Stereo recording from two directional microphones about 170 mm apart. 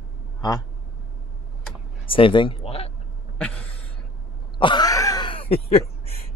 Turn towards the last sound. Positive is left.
turn(degrees=35)  # may be behind; listen again after turning